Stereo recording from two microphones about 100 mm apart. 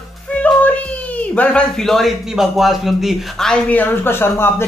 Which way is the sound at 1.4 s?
10° left (ahead or behind).